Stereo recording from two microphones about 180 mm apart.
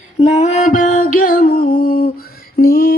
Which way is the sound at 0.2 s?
40° left (ahead or behind).